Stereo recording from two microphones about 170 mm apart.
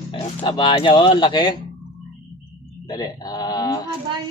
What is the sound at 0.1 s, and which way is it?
Speech, 30° left (ahead or behind).